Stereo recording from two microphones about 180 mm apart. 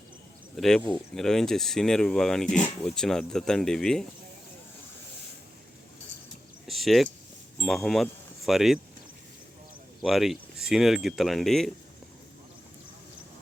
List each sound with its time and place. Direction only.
0.5 s speech: centre (ahead or behind)
6.7 s a sound: centre (ahead or behind)
7.6 s speech: centre (ahead or behind)
10.0 s speech: centre (ahead or behind)